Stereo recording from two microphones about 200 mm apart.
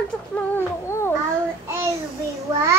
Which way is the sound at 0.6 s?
10° left (ahead or behind).